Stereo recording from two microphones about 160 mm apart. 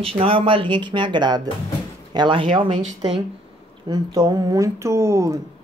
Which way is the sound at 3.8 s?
25° right (ahead or behind).